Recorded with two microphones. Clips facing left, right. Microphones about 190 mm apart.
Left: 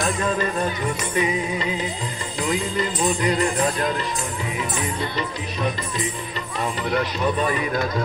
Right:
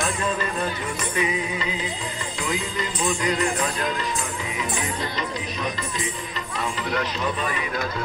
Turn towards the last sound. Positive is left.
turn(degrees=40)  # may be behind; listen again after turning